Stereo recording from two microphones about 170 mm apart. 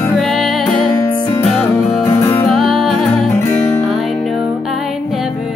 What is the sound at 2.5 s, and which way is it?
Music, centre (ahead or behind).